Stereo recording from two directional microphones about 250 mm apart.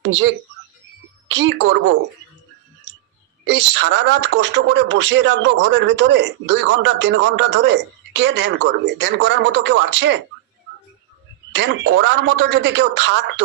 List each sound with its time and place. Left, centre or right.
0.0 s speech: right
3.4 s speech: right
11.5 s speech: right